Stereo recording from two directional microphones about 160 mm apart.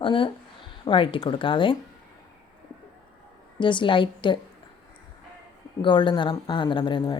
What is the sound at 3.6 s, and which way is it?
Speech, 30° left (ahead or behind).